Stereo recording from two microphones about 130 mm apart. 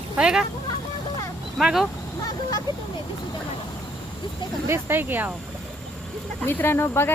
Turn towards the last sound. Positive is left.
turn(degrees=20)  # may be behind; listen again after turning